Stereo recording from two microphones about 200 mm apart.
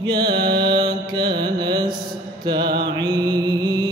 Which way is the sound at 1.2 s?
55° right (ahead or behind).